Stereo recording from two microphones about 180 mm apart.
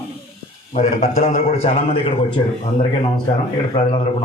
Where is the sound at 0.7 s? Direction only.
40° left (ahead or behind); by 3.3 s 25° left (ahead or behind).